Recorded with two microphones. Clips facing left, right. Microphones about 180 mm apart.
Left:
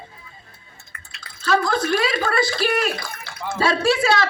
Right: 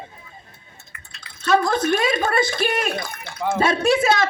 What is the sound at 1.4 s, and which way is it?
A man's voice, 25° right (ahead or behind).